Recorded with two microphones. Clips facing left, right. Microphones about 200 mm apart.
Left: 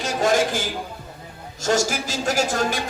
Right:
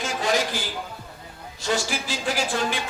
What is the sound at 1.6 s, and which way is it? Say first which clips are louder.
Speech: left 5 dB; 45° left (ahead or behind).